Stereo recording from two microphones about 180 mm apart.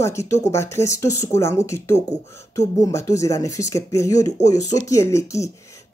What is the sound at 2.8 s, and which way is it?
Speech, 15° left (ahead or behind).